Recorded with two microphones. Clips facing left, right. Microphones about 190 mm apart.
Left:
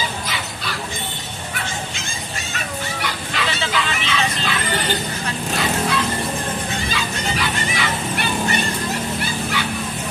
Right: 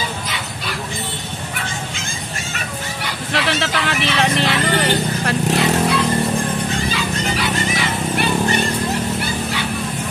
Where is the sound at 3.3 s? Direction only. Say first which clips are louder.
Right 4 dB; 85° right.